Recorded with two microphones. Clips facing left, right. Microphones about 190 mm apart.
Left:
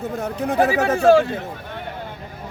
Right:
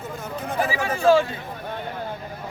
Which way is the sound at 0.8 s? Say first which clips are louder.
Left 3 dB; 70° left (ahead or behind).